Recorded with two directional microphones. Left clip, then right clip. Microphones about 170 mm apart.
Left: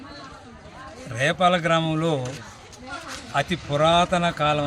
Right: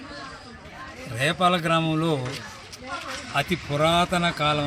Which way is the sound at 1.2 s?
Centre (ahead or behind).